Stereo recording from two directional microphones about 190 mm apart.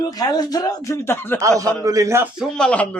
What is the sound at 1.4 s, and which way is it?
Speech, 15° right (ahead or behind).